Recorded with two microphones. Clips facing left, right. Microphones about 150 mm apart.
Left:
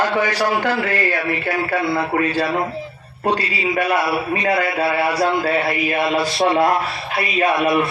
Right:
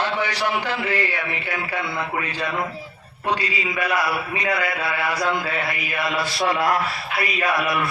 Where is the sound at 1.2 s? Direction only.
35° left (ahead or behind).